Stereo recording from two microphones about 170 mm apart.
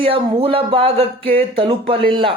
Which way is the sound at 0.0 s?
35° right (ahead or behind).